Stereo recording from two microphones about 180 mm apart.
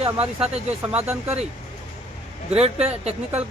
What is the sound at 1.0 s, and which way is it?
Speech, 5° right (ahead or behind).